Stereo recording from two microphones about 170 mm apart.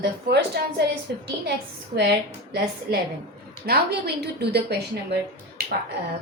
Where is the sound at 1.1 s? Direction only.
70° right (ahead or behind).